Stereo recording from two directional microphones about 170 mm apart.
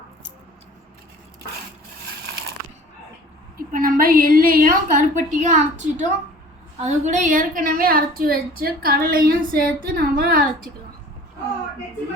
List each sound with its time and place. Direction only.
3.7 s a woman's voice: 55° right (ahead or behind)